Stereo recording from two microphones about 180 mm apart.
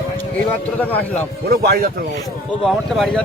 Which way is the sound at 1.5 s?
60° right (ahead or behind).